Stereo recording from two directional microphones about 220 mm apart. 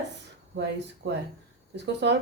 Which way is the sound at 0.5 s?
50° right (ahead or behind).